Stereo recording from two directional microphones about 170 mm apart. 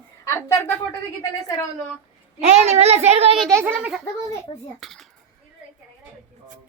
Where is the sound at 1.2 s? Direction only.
20° left (ahead or behind).